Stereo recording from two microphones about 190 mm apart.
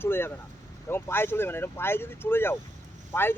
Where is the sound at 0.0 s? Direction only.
10° left (ahead or behind).